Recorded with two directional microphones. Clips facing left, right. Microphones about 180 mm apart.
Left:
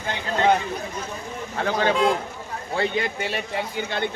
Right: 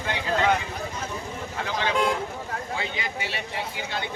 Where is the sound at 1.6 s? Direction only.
45° left (ahead or behind).